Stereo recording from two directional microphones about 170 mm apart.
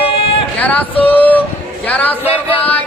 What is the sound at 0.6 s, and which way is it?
Female singing, 10° left (ahead or behind).